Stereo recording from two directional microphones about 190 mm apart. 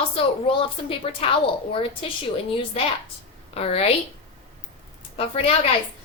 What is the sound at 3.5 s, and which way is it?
Speech, 35° left (ahead or behind).